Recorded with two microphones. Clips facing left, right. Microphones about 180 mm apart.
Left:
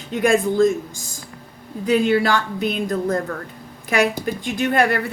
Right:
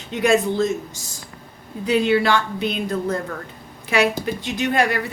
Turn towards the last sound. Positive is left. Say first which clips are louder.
# left 2 dB
turn(degrees=50)  # may be behind; listen again after turning